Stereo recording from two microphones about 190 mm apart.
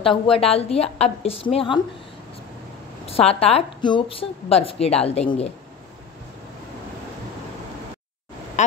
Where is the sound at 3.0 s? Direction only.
30° left (ahead or behind).